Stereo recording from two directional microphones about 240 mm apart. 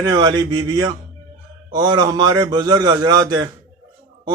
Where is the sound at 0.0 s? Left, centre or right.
Centre.